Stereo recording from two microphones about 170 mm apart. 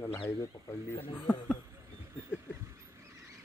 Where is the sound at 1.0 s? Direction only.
10° left (ahead or behind).